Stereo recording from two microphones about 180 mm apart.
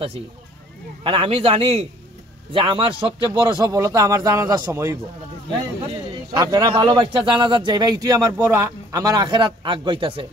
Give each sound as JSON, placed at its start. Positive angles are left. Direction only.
{"t": 1.0, "sound": "a man's voice", "side_deg": -30}
{"t": 6.3, "sound": "a man's voice", "side_deg": -20}